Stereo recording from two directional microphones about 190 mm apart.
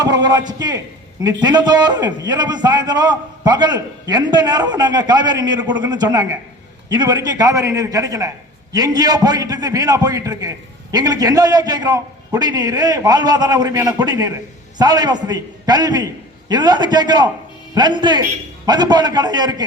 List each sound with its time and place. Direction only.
0.0 s a man's voice: 20° right (ahead or behind)